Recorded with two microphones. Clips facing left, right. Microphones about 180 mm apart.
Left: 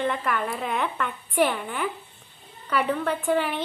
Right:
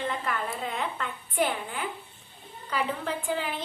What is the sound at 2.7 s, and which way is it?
Speech, 65° left (ahead or behind).